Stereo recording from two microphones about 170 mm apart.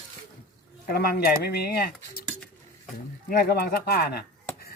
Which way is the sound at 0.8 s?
65° left (ahead or behind).